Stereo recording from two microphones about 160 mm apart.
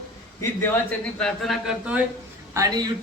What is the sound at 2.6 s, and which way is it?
Speech, 25° right (ahead or behind).